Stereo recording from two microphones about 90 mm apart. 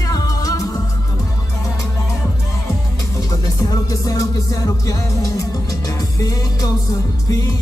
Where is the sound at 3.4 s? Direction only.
45° left (ahead or behind).